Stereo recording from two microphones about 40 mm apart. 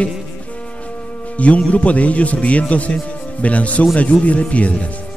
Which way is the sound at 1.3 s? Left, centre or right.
Left.